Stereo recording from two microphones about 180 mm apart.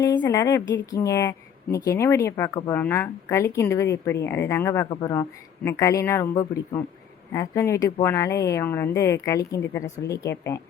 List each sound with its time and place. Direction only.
0.0 s a woman's voice: 25° left (ahead or behind)